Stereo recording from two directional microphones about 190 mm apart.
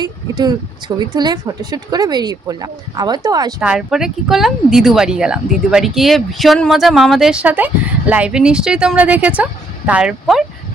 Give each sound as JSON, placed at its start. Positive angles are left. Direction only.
{"t": 0.0, "sound": "speech", "side_deg": -20}
{"t": 3.6, "sound": "speech", "side_deg": -5}